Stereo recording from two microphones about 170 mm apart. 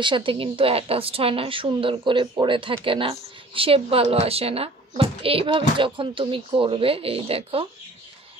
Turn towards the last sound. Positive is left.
turn(degrees=-35)  # may be behind; listen again after turning